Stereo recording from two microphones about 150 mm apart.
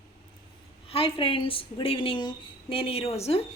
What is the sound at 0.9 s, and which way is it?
A woman's voice, 40° left (ahead or behind).